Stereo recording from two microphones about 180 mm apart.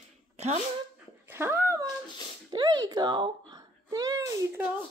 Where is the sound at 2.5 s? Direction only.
20° right (ahead or behind).